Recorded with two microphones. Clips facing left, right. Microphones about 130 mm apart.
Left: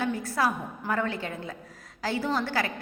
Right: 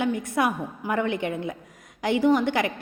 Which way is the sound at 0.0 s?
20° right (ahead or behind).